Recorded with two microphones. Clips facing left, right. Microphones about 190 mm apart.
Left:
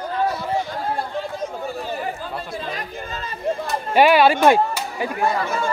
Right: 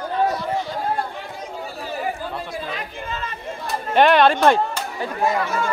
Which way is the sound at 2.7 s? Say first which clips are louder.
Even; 40° left (ahead or behind).